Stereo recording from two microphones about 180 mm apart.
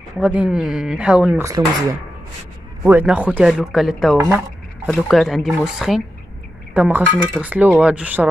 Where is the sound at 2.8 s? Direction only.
10° right (ahead or behind).